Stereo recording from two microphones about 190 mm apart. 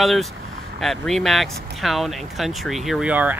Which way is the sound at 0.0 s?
Centre (ahead or behind).